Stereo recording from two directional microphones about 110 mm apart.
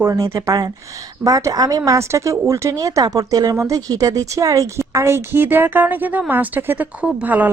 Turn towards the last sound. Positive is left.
turn(degrees=-15)  # may be behind; listen again after turning